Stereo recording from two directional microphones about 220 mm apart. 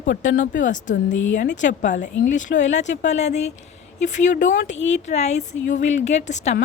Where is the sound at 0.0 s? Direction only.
35° left (ahead or behind).